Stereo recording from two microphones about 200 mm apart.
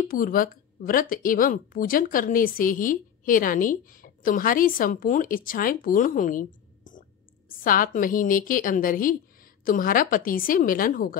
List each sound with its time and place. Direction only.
0.0 s speech: 45° left (ahead or behind)